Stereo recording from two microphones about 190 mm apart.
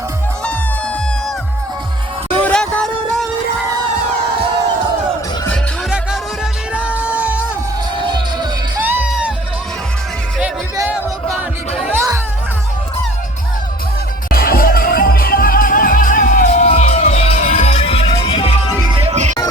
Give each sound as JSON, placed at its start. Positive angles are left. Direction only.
{"t": 2.4, "sound": "music", "side_deg": 5}
{"t": 6.7, "sound": "music", "side_deg": -5}
{"t": 7.9, "sound": "music", "side_deg": -25}
{"t": 8.8, "sound": "music", "side_deg": -10}
{"t": 10.8, "sound": "music", "side_deg": -10}
{"t": 14.3, "sound": "music", "side_deg": 50}
{"t": 18.9, "sound": "music", "side_deg": -35}